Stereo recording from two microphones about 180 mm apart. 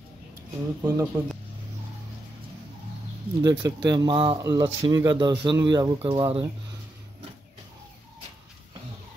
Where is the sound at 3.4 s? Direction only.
20° right (ahead or behind).